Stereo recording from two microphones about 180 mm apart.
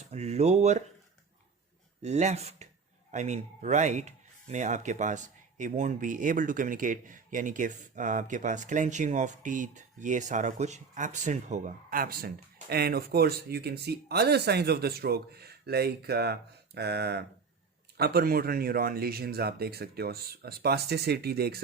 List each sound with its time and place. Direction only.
0.1 s speech: 35° right (ahead or behind)
2.0 s speech: 40° right (ahead or behind); by 21.6 s 60° right (ahead or behind)